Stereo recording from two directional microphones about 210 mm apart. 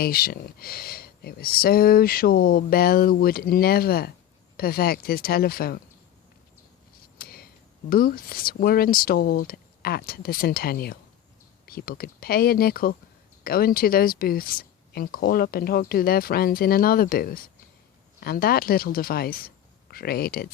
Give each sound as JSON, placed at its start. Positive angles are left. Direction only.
{"t": 0.0, "sound": "speech", "side_deg": 45}
{"t": 7.2, "sound": "a sound", "side_deg": 45}
{"t": 7.9, "sound": "speech", "side_deg": 45}